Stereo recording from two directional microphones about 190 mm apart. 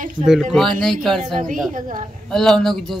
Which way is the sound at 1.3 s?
45° right (ahead or behind).